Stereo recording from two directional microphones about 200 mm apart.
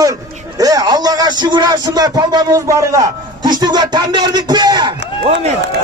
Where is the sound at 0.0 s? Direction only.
15° right (ahead or behind).